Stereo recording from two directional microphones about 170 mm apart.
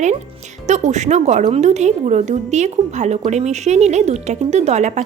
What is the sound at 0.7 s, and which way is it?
A woman's voice, 45° right (ahead or behind).